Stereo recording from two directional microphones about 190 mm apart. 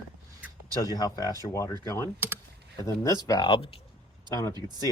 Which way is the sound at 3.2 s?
20° left (ahead or behind).